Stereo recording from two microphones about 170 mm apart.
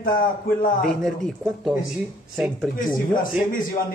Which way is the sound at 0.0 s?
55° left (ahead or behind).